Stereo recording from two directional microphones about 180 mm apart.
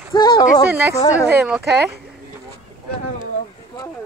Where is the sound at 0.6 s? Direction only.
10° right (ahead or behind).